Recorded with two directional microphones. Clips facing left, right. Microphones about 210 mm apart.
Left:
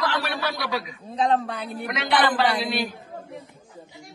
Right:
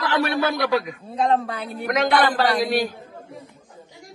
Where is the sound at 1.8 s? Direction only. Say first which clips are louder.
Right 4 dB; 45° right (ahead or behind).